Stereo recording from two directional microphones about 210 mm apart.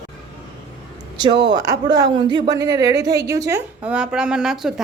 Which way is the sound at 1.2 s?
20° right (ahead or behind).